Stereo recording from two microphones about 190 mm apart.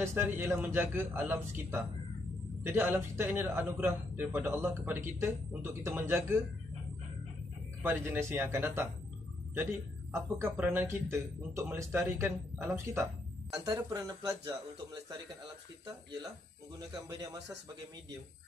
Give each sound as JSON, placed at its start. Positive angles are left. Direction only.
{"t": 0.0, "sound": "a man's voice", "side_deg": -15}
{"t": 7.8, "sound": "a man's voice", "side_deg": -10}
{"t": 10.1, "sound": "a man's voice", "side_deg": -10}
{"t": 16.9, "sound": "speech", "side_deg": -20}